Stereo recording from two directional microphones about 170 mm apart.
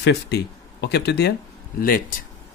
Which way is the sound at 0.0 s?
75° left (ahead or behind).